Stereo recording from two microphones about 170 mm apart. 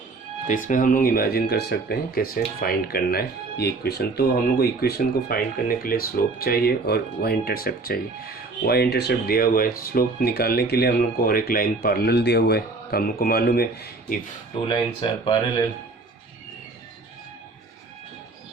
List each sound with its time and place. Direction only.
0.4 s speech: 50° left (ahead or behind)
14.7 s speech: 30° left (ahead or behind)